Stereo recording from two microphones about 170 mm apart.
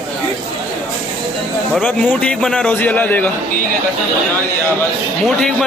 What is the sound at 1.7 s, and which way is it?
A man's voice, 5° left (ahead or behind).